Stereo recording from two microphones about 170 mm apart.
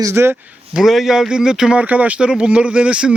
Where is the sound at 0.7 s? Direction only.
Centre (ahead or behind).